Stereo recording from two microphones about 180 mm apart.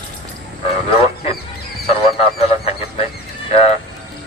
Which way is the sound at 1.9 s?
35° left (ahead or behind).